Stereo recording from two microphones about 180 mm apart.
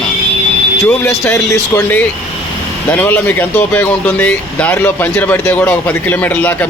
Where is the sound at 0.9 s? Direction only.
10° left (ahead or behind).